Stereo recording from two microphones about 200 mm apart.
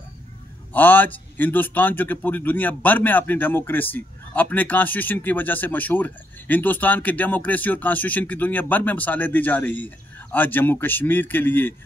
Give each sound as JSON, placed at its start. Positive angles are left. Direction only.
{"t": 0.7, "sound": "a man's voice", "side_deg": 10}